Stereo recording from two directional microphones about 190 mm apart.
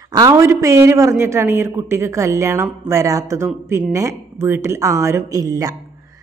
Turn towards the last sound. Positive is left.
turn(degrees=-20)  # may be behind; listen again after turning